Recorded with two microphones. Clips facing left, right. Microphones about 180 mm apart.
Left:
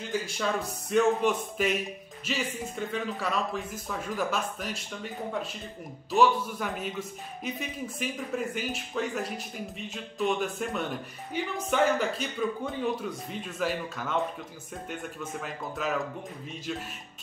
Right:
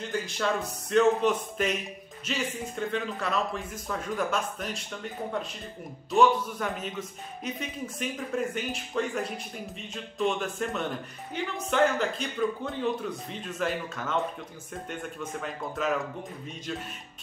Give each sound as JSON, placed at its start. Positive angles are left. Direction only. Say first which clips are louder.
{"t": 0.4, "sound": "speech", "louder": "right 1 dB", "side_deg": 5}
{"t": 6.1, "sound": "speech", "louder": "right 1 dB", "side_deg": 5}
{"t": 15.4, "sound": "speech", "louder": "right 3 dB", "side_deg": 0}